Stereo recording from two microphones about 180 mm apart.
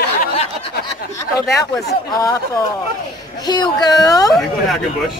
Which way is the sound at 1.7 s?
20° left (ahead or behind).